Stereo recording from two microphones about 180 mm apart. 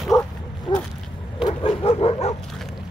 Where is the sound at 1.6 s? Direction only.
30° left (ahead or behind).